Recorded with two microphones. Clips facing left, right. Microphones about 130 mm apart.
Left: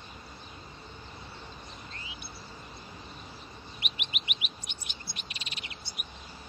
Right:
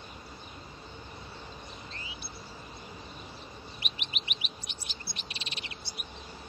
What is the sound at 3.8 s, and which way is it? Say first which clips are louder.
Chirp: even; 35° right (ahead or behind).